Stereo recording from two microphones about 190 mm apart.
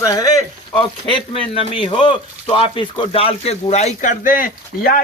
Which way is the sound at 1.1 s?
30° left (ahead or behind).